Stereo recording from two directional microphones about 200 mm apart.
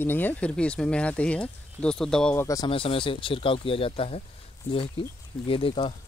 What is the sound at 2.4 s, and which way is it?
Speech, 20° left (ahead or behind).